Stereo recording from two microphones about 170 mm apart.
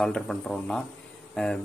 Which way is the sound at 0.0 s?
Centre (ahead or behind).